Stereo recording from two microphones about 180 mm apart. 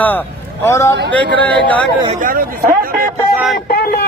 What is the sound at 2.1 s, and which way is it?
Speech, 50° right (ahead or behind).